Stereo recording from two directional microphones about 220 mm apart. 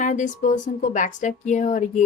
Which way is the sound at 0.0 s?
35° left (ahead or behind).